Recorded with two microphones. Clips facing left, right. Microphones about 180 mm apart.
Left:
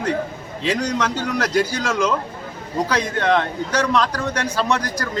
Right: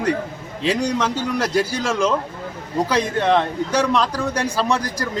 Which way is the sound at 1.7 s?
30° right (ahead or behind).